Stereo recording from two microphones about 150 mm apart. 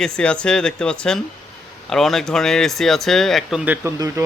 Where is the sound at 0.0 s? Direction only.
5° left (ahead or behind).